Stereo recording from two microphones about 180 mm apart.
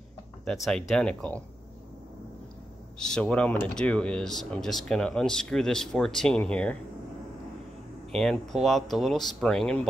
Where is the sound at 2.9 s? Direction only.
5° left (ahead or behind).